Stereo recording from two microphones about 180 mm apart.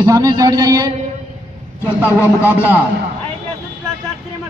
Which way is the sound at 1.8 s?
15° left (ahead or behind).